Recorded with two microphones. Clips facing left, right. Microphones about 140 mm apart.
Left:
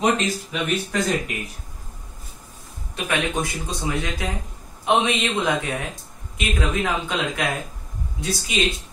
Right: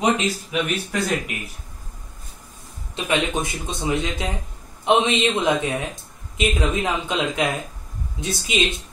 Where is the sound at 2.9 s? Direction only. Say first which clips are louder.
Right 2 dB; 20° right (ahead or behind).